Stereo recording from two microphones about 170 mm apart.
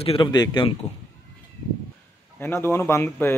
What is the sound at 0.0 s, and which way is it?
Speech, 30° left (ahead or behind).